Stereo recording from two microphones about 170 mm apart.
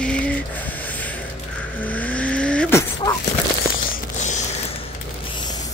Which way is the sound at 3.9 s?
45° left (ahead or behind).